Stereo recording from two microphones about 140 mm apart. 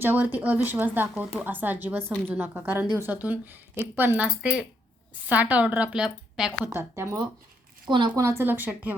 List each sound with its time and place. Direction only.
0.0 s a woman's voice: 15° right (ahead or behind)
6.7 s a woman's voice: 20° right (ahead or behind)
7.9 s a woman's voice: 35° right (ahead or behind)
8.2 s a woman's voice: 20° right (ahead or behind)